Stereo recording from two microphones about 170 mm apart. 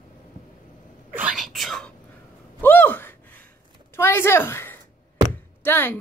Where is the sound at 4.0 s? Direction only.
15° left (ahead or behind).